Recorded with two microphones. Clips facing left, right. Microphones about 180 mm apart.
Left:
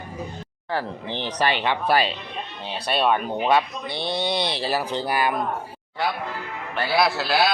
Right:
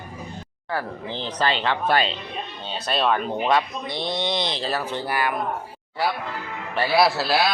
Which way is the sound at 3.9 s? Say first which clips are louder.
Even; 30° left (ahead or behind).